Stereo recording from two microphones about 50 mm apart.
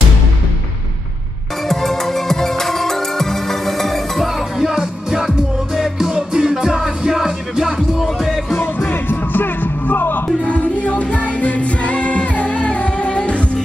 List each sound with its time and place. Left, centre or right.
1.7 s music: centre
4.6 s music: centre
9.1 s music: left
10.4 s music: left